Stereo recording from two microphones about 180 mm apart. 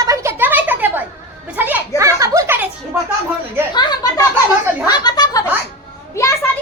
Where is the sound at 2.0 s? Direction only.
15° right (ahead or behind).